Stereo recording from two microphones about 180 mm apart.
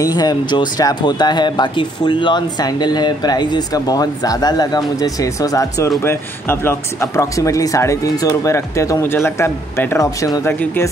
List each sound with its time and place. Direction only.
0.0 s speech: 20° left (ahead or behind)